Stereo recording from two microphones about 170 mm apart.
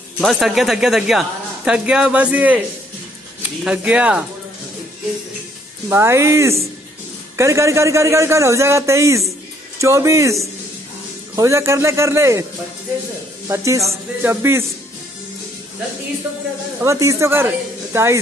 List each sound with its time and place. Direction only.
0.2 s speech: centre (ahead or behind)
3.6 s a man's voice: 10° right (ahead or behind)
5.9 s a man's voice: 15° right (ahead or behind)
13.5 s a man's voice: 20° right (ahead or behind)
16.8 s a man's voice: 15° right (ahead or behind)